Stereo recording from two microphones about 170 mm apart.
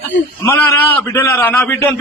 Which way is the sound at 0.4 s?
15° left (ahead or behind).